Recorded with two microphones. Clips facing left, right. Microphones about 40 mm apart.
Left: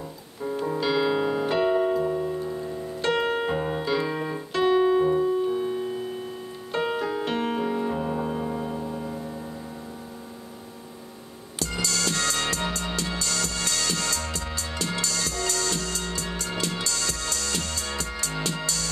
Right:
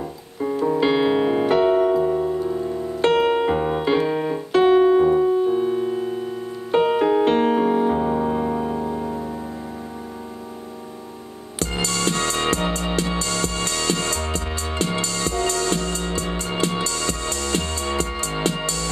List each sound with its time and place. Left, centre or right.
0.7 s piano: right
2.0 s music: right
3.0 s piano: right
4.5 s piano: right
6.7 s music: right
11.6 s music: right